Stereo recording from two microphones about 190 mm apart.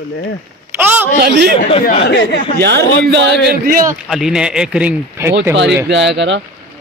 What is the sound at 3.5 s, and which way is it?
Speech, 50° right (ahead or behind).